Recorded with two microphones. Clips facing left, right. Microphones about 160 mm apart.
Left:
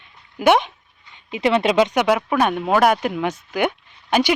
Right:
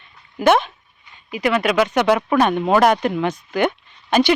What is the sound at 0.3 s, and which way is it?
Speech, 15° left (ahead or behind).